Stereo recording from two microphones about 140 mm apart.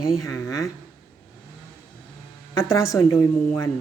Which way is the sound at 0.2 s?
20° left (ahead or behind).